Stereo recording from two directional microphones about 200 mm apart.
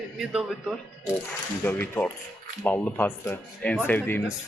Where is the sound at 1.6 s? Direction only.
10° left (ahead or behind).